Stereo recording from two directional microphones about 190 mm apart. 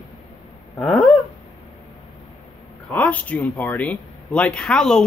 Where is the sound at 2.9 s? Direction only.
10° left (ahead or behind).